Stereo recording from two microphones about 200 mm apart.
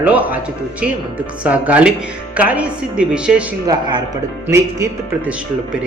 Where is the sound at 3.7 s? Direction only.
20° right (ahead or behind).